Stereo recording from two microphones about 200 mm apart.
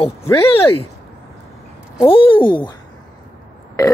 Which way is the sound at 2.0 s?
25° left (ahead or behind).